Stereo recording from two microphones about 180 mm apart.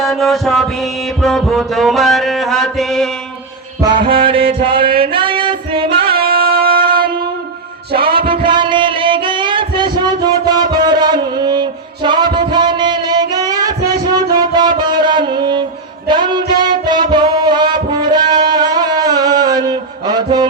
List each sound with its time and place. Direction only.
0.0 s music: centre (ahead or behind)
3.8 s music: 25° right (ahead or behind)
6.1 s music: 55° right (ahead or behind)
7.9 s a sound: 55° right (ahead or behind)
8.4 s music: 25° right (ahead or behind)